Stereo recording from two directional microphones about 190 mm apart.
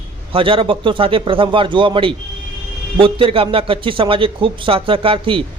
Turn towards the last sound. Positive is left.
turn(degrees=-30)  # may be behind; listen again after turning